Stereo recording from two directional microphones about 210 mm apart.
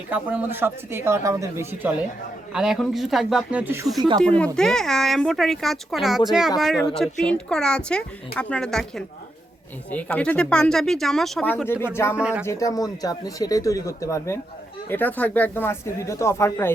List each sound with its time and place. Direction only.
0.1 s speech: 5° right (ahead or behind); by 11.9 s 10° left (ahead or behind)
12.1 s speech: 5° right (ahead or behind)
12.5 s speech: 15° left (ahead or behind)